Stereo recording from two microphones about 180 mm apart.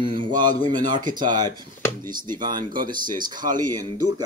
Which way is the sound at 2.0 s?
25° right (ahead or behind).